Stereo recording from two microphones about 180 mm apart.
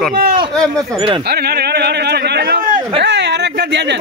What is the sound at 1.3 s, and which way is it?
A man's voice, 60° right (ahead or behind).